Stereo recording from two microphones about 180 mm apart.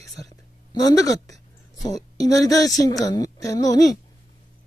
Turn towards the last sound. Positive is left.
turn(degrees=20)  # may be behind; listen again after turning